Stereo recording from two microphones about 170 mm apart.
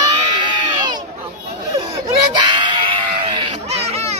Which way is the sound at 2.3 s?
25° right (ahead or behind).